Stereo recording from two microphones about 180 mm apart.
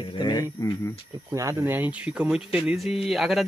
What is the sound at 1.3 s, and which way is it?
Speech, 15° right (ahead or behind).